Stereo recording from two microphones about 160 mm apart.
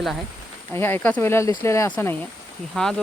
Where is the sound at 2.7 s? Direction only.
5° left (ahead or behind).